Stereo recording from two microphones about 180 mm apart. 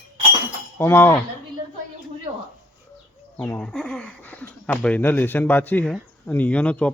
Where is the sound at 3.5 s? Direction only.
15° left (ahead or behind).